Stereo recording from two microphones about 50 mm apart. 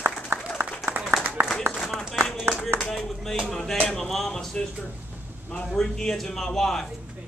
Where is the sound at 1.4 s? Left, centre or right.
Right.